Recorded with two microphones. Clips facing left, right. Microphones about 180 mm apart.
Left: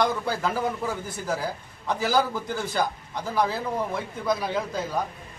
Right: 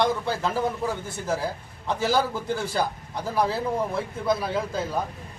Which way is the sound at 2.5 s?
30° right (ahead or behind).